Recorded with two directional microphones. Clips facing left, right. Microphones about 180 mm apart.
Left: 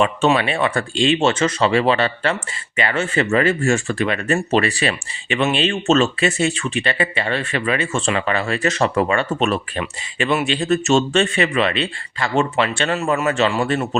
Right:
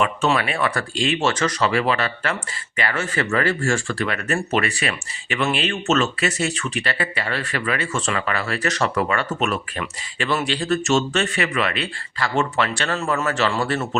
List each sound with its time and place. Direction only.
0.0 s speech: 25° left (ahead or behind)